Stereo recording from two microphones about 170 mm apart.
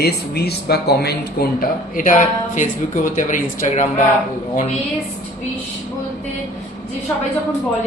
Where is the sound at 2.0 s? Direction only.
50° left (ahead or behind).